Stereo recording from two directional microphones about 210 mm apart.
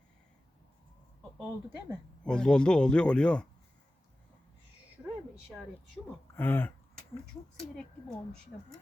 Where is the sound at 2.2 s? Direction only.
5° left (ahead or behind).